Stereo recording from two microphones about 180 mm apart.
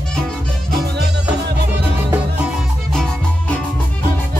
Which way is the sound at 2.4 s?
Centre (ahead or behind).